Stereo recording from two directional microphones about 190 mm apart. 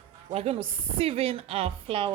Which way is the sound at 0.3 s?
35° right (ahead or behind).